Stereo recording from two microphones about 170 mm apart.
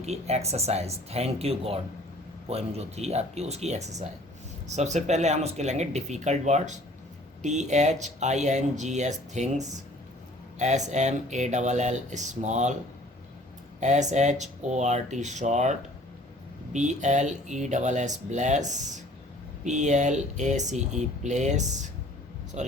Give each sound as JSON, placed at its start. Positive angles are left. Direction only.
{"t": 0.0, "sound": "speech", "side_deg": -40}
{"t": 13.7, "sound": "speech", "side_deg": -45}